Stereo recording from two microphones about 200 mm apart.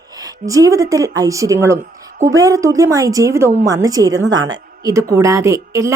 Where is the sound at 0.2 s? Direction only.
20° right (ahead or behind).